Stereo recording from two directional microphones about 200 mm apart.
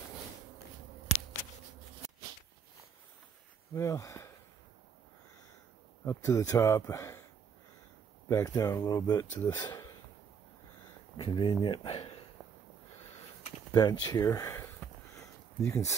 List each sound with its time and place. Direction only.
3.7 s speech: 15° left (ahead or behind)
6.0 s speech: 15° left (ahead or behind)
8.3 s speech: 15° left (ahead or behind)
11.1 s speech: 25° left (ahead or behind)
13.7 s a sound: 20° left (ahead or behind)
14.0 s speech: 15° left (ahead or behind)
15.1 s a sound: 15° left (ahead or behind)